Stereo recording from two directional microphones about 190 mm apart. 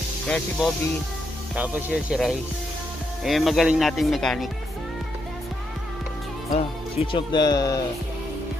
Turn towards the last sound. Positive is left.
turn(degrees=20)  # may be behind; listen again after turning